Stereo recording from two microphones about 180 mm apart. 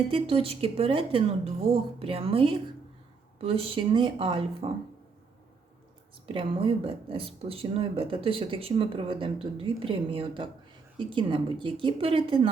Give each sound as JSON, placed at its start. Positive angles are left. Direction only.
{"t": 0.1, "sound": "a woman's voice", "side_deg": -35}
{"t": 6.2, "sound": "speech", "side_deg": -30}